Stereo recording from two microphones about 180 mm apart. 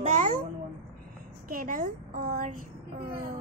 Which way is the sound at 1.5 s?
50° right (ahead or behind).